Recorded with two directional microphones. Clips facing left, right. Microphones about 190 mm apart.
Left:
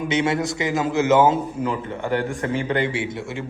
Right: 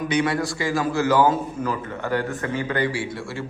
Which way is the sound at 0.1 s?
20° left (ahead or behind).